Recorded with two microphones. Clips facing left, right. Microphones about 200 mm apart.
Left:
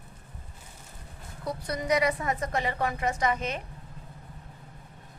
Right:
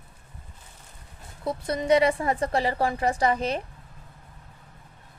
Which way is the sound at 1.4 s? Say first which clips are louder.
Right 5 dB; 25° right (ahead or behind).